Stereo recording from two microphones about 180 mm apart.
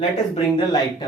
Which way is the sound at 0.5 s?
25° left (ahead or behind).